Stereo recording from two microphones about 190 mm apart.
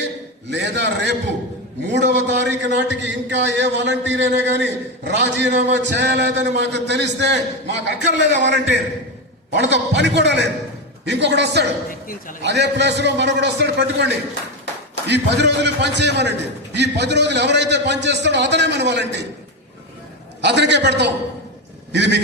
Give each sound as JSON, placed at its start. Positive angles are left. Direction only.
{"t": 0.5, "sound": "a man's voice", "side_deg": -65}
{"t": 20.4, "sound": "a man's voice", "side_deg": -65}